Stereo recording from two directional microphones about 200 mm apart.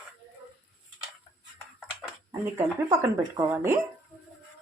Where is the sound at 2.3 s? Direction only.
15° right (ahead or behind).